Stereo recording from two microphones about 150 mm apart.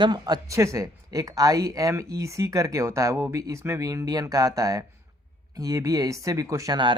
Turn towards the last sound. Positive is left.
turn(degrees=-30)  # may be behind; listen again after turning